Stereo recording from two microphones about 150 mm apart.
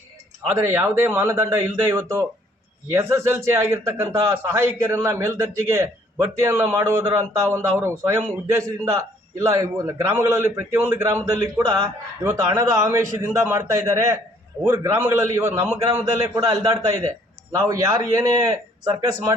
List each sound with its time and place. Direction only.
0.5 s a man's voice: 15° right (ahead or behind)